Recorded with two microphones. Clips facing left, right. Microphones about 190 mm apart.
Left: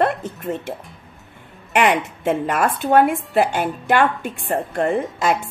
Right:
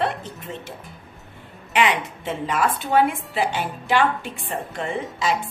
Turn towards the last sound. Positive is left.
turn(degrees=50)  # may be behind; listen again after turning